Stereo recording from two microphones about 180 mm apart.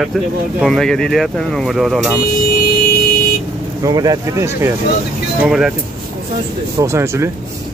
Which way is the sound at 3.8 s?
20° right (ahead or behind).